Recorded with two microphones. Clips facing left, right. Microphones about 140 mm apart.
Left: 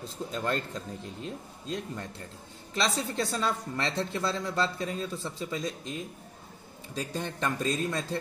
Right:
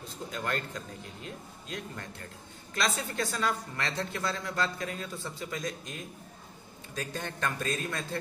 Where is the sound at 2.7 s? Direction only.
25° left (ahead or behind).